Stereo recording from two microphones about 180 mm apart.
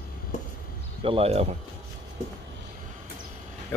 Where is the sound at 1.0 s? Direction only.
35° right (ahead or behind).